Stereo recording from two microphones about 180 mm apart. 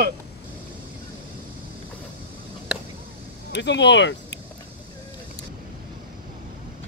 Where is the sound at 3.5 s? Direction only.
75° left (ahead or behind).